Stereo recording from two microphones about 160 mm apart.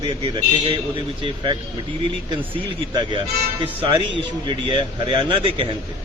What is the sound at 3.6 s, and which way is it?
A man's voice, 35° right (ahead or behind).